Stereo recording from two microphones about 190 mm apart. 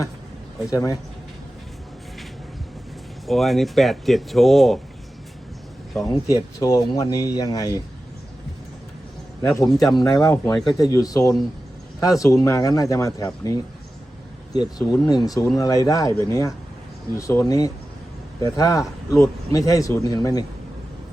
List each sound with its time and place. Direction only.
0.7 s speech: 15° left (ahead or behind)
3.2 s speech: centre (ahead or behind)
5.9 s a man's voice: centre (ahead or behind)
6.3 s speech: 15° left (ahead or behind)
9.4 s speech: 15° left (ahead or behind)
10.8 s speech: 20° left (ahead or behind)
14.8 s speech: 20° left (ahead or behind)
18.4 s speech: 15° left (ahead or behind)